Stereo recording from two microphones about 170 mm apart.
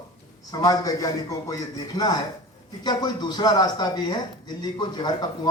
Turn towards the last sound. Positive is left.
turn(degrees=25)  # may be behind; listen again after turning